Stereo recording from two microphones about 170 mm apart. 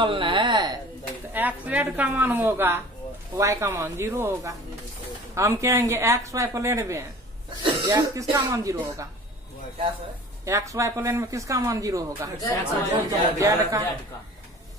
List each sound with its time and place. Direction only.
0.0 s a sound: 30° right (ahead or behind)
1.3 s speech: 10° right (ahead or behind)
10.4 s speech: 15° right (ahead or behind)